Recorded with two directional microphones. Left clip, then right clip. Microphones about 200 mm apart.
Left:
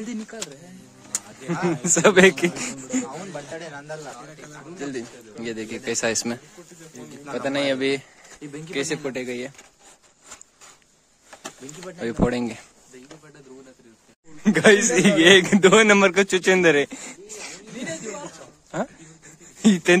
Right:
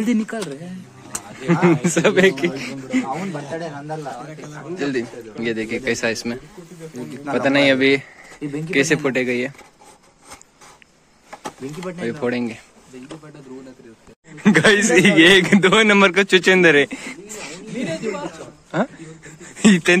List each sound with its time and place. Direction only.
0.0 s speech: 55° right (ahead or behind)
1.5 s a man's voice: 10° left (ahead or behind)
2.0 s a man's voice: 50° left (ahead or behind)
4.7 s speech: 15° left (ahead or behind); by 6.4 s 35° left (ahead or behind)
7.3 s a man's voice: 10° left (ahead or behind)
12.0 s speech: 35° left (ahead or behind)
14.4 s a man's voice: 5° left (ahead or behind)
19.6 s a man's voice: 10° left (ahead or behind)